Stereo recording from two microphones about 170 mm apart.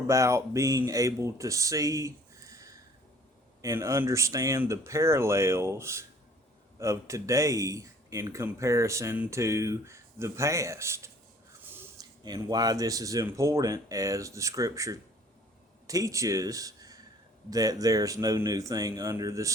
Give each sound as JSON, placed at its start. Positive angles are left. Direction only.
{"t": 0.1, "sound": "speech", "side_deg": -15}